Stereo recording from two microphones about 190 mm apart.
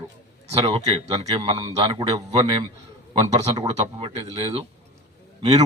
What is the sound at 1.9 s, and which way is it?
Speech, 20° right (ahead or behind).